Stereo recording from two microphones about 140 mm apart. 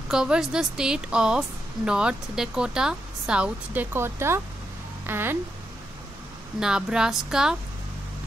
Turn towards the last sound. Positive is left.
turn(degrees=-5)  # may be behind; listen again after turning